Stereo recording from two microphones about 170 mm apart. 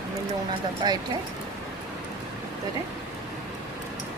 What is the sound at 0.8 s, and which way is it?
Speech, 25° right (ahead or behind).